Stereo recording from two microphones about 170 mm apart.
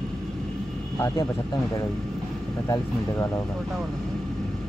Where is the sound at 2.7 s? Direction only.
15° left (ahead or behind).